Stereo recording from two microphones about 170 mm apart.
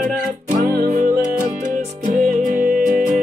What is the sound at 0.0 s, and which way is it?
Music, 50° right (ahead or behind).